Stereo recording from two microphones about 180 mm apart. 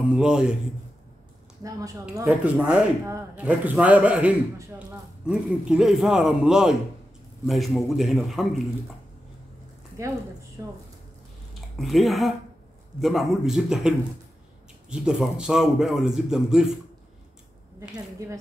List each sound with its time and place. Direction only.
0.0 s a man's voice: 5° right (ahead or behind)
1.6 s a man's voice: 20° right (ahead or behind)
2.2 s a man's voice: 5° right (ahead or behind)
10.6 s speech: 20° right (ahead or behind)
11.8 s a man's voice: centre (ahead or behind)